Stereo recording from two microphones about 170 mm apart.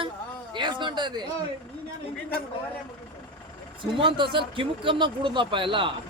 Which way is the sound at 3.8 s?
30° right (ahead or behind).